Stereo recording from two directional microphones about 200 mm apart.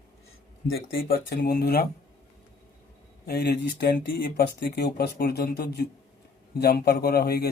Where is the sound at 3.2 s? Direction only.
50° left (ahead or behind).